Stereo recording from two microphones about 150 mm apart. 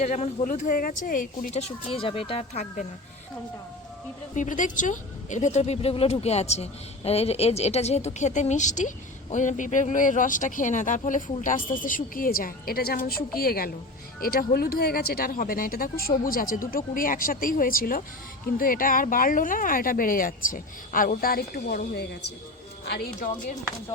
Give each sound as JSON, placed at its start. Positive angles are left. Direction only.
{"t": 0.0, "sound": "speech", "side_deg": 45}
{"t": 0.4, "sound": "speech", "side_deg": 60}
{"t": 1.6, "sound": "speech", "side_deg": 40}
{"t": 4.4, "sound": "a woman's voice", "side_deg": 60}
{"t": 22.9, "sound": "speech", "side_deg": 65}